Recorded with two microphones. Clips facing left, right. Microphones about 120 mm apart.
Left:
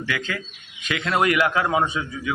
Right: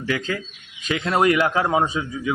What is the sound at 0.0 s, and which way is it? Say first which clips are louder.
A man's voice: right 3 dB; 35° right (ahead or behind).